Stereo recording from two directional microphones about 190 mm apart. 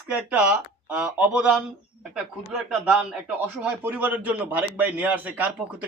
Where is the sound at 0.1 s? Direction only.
5° right (ahead or behind).